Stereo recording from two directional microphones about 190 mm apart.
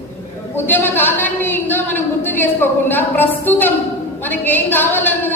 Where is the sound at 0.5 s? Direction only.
10° left (ahead or behind).